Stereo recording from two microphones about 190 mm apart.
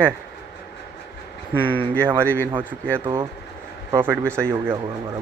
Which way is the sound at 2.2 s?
10° left (ahead or behind).